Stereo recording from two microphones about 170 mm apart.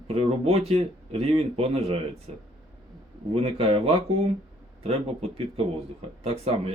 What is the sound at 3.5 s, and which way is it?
Speech, 35° right (ahead or behind).